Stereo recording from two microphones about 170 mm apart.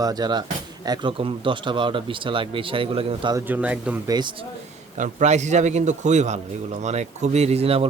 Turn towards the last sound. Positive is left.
turn(degrees=-35)  # may be behind; listen again after turning